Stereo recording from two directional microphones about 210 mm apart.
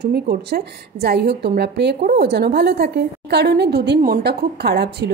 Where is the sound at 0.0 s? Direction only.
50° right (ahead or behind).